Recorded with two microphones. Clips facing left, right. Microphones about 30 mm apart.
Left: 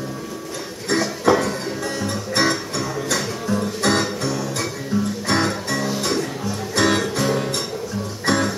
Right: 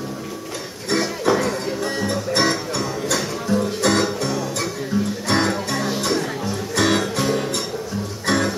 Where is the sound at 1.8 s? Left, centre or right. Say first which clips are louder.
Right 3 dB; right.